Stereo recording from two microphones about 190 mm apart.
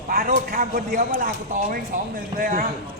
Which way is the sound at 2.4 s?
45° right (ahead or behind).